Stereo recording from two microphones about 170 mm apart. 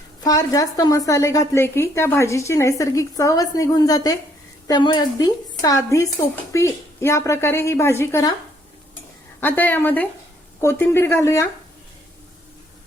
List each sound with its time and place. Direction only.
0.2 s a woman's voice: 20° left (ahead or behind)
9.4 s a woman's voice: 10° left (ahead or behind)